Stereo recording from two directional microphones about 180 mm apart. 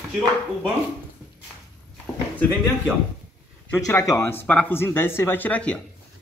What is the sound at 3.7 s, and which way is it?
Speech, 15° left (ahead or behind).